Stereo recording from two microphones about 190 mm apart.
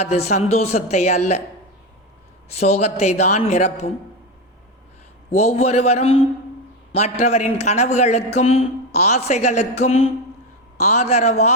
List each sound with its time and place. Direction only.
0.0 s a woman's voice: 35° left (ahead or behind)
2.5 s a woman's voice: 35° left (ahead or behind)
5.3 s a woman's voice: 35° left (ahead or behind)